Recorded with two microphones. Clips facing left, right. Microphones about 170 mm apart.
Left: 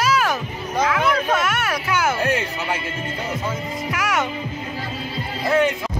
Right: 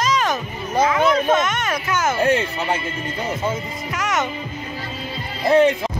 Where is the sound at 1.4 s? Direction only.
5° left (ahead or behind).